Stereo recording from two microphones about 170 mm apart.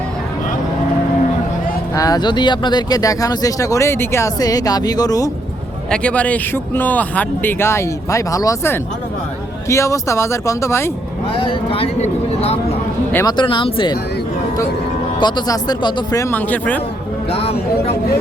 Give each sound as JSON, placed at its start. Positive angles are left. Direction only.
{"t": 2.0, "sound": "speech", "side_deg": 25}
{"t": 5.9, "sound": "speech", "side_deg": 5}
{"t": 11.4, "sound": "speech", "side_deg": 35}
{"t": 13.1, "sound": "speech", "side_deg": 25}
{"t": 15.2, "sound": "speech", "side_deg": 25}
{"t": 17.3, "sound": "speech", "side_deg": 35}